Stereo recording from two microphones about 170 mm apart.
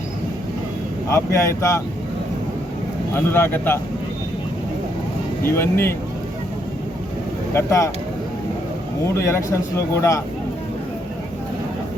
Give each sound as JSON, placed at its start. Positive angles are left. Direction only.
{"t": 1.1, "sound": "speech", "side_deg": 15}
{"t": 3.2, "sound": "speech", "side_deg": 15}
{"t": 5.4, "sound": "speech", "side_deg": 15}
{"t": 7.5, "sound": "speech", "side_deg": 15}
{"t": 9.0, "sound": "speech", "side_deg": 15}